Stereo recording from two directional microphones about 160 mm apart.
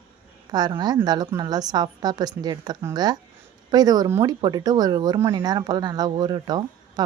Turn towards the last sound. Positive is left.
turn(degrees=-25)  # may be behind; listen again after turning